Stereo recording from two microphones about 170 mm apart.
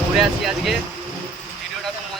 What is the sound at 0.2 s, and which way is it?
Speech, centre (ahead or behind).